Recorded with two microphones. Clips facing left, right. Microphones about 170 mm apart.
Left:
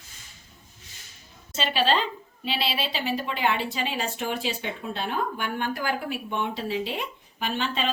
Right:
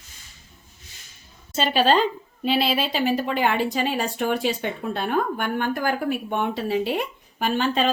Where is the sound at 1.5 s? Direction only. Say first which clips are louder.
Right 5 dB; 45° right (ahead or behind).